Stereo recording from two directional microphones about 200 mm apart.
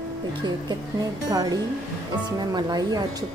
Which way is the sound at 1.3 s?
20° right (ahead or behind).